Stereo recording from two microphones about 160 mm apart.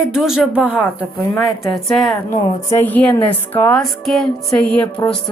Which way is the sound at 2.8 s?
10° left (ahead or behind).